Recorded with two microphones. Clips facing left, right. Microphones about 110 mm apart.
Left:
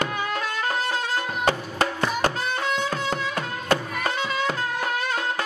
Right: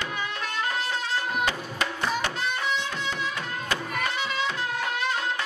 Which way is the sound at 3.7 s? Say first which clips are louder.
Left 6 dB; 45° left (ahead or behind).